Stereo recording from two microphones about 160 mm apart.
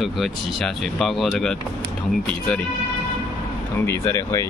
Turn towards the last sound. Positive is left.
turn(degrees=20)  # may be behind; listen again after turning